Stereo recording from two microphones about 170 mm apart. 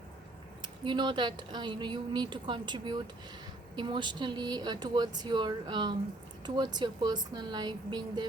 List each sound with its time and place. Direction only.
0.6 s speech: 25° right (ahead or behind)